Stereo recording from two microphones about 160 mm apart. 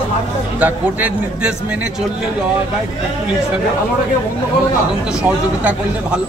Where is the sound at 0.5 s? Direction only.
10° right (ahead or behind).